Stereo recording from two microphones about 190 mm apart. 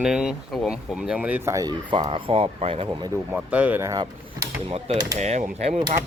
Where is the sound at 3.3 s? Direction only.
5° right (ahead or behind).